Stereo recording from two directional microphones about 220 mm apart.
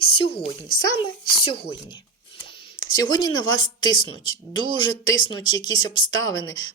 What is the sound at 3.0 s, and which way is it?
Speech, 20° left (ahead or behind).